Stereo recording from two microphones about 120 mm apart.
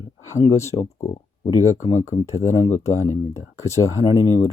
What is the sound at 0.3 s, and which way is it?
Speech, 25° left (ahead or behind).